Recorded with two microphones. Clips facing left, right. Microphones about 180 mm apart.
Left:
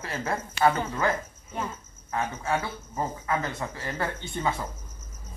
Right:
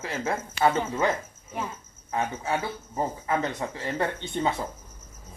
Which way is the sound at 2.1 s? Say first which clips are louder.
Even; 25° right (ahead or behind).